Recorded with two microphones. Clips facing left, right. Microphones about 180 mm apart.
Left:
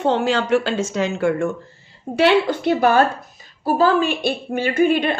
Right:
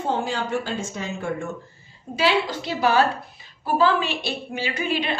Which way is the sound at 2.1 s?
60° left (ahead or behind).